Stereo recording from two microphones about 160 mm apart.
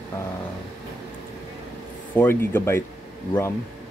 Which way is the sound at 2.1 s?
10° left (ahead or behind).